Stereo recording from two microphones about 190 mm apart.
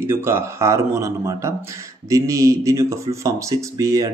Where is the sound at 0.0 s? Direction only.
10° right (ahead or behind).